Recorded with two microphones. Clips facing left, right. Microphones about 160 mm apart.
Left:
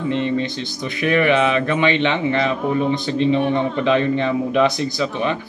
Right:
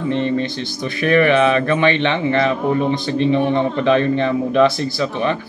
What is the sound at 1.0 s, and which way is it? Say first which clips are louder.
A man's voice: right 3 dB; 15° left (ahead or behind).